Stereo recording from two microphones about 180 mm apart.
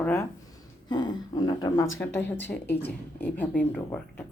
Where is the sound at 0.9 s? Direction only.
25° left (ahead or behind); by 4.0 s 10° left (ahead or behind).